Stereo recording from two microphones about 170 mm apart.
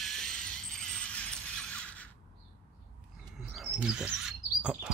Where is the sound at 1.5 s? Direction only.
10° left (ahead or behind).